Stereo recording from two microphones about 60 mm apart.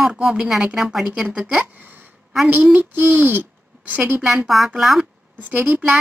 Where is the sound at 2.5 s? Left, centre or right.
Right.